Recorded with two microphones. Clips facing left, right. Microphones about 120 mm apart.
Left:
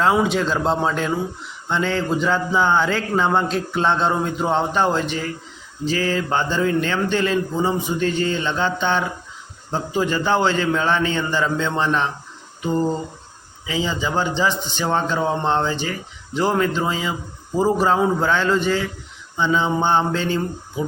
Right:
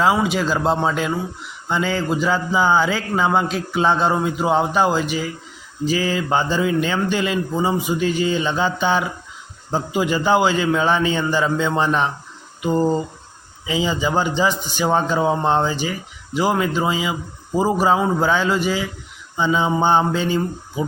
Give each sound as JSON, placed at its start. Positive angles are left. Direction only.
{"t": 0.0, "sound": "a man's voice", "side_deg": -5}